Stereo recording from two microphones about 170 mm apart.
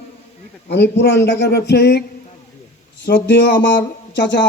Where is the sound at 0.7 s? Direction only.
85° left.